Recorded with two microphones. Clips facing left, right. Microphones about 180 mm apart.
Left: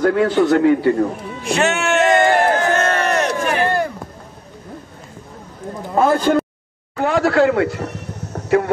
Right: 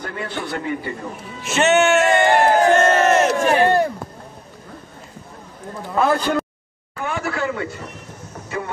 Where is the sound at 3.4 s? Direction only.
30° right (ahead or behind).